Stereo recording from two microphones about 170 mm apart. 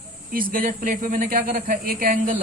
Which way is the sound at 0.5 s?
55° right (ahead or behind).